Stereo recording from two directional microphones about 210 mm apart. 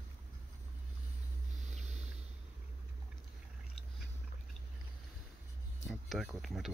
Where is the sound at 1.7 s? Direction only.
30° right (ahead or behind).